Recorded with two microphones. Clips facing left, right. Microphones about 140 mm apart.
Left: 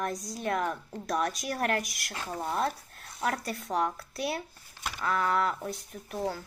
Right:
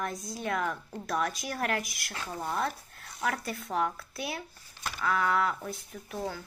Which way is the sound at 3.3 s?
40° left (ahead or behind).